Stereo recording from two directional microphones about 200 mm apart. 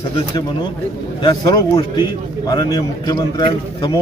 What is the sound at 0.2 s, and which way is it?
A man's voice, 20° left (ahead or behind).